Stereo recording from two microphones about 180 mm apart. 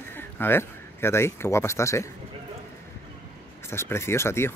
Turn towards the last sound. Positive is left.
turn(degrees=15)  # may be behind; listen again after turning